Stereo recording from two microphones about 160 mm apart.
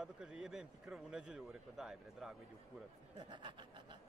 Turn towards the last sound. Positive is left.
turn(degrees=-30)  # may be behind; listen again after turning